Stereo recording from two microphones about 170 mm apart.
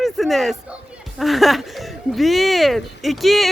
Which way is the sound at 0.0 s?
Centre (ahead or behind).